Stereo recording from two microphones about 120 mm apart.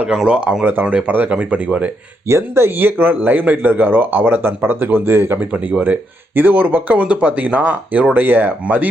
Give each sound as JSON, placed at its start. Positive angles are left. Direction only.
{"t": 0.0, "sound": "speech", "side_deg": -5}
{"t": 2.2, "sound": "speech", "side_deg": -20}